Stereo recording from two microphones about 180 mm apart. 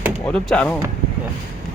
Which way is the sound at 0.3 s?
5° left (ahead or behind).